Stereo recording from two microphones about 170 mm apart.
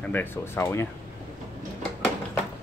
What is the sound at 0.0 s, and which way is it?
Speech, 10° left (ahead or behind).